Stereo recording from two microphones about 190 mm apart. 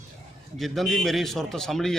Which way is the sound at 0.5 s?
Centre (ahead or behind).